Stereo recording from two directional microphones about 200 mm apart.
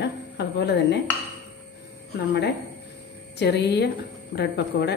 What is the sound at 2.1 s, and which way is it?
A woman's voice, 55° left (ahead or behind).